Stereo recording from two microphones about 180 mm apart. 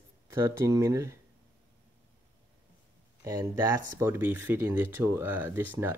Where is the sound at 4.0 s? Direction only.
10° right (ahead or behind).